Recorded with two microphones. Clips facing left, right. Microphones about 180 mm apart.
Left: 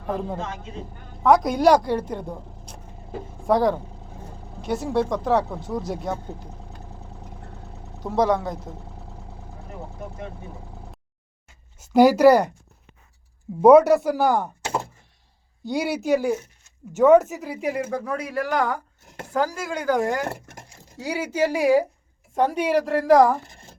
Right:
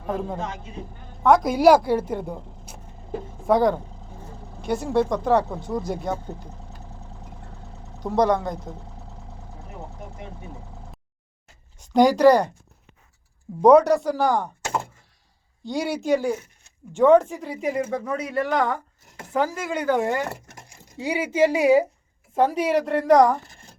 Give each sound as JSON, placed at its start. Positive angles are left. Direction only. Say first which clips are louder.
{"t": 0.1, "sound": "speech", "louder": "even", "side_deg": 0}
{"t": 7.9, "sound": "speech", "louder": "right 1 dB", "side_deg": 0}
{"t": 11.8, "sound": "speech", "louder": "left 2 dB", "side_deg": 5}
{"t": 13.6, "sound": "speech", "louder": "left 2 dB", "side_deg": 5}
{"t": 15.6, "sound": "speech", "louder": "left 1 dB", "side_deg": 5}